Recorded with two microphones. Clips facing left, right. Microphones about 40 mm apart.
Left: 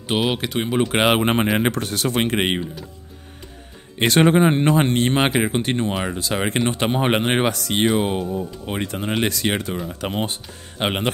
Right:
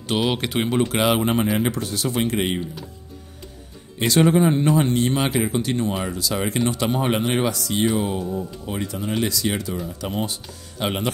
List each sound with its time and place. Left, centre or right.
0.0 s speech: left
1.0 s speech: left
1.5 s speech: left
4.0 s speech: left